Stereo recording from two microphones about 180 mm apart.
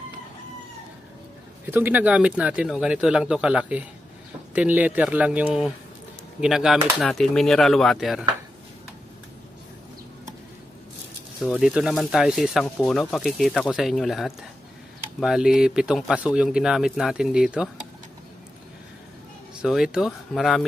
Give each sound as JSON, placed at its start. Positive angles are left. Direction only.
{"t": 1.7, "sound": "speech", "side_deg": -10}
{"t": 11.3, "sound": "speech", "side_deg": 0}
{"t": 19.6, "sound": "speech", "side_deg": -5}